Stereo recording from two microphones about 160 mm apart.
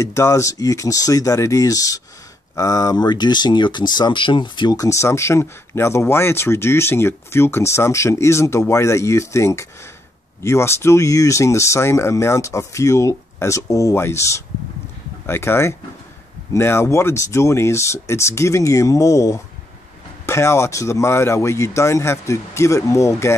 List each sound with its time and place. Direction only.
0.0 s speech: 20° left (ahead or behind)